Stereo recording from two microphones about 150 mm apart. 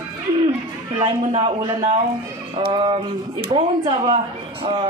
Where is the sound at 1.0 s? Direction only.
35° right (ahead or behind).